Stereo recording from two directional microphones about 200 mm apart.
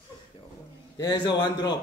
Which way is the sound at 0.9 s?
20° left (ahead or behind).